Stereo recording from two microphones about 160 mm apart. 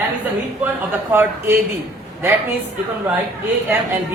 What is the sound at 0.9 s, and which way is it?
Speech, 15° right (ahead or behind).